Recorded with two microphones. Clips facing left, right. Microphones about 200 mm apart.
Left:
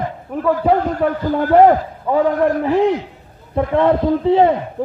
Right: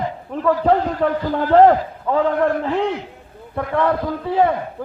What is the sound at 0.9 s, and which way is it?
Speech, 50° left (ahead or behind).